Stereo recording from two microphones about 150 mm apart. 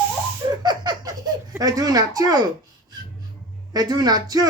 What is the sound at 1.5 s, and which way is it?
Speech, 25° right (ahead or behind).